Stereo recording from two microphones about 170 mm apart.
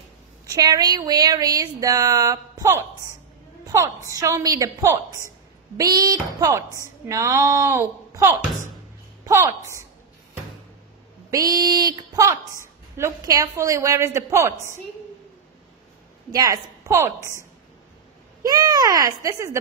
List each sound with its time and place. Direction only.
0.5 s speech: 20° right (ahead or behind)
11.2 s a woman's voice: 20° right (ahead or behind)
16.3 s speech: 20° right (ahead or behind)
18.4 s speech: 20° right (ahead or behind)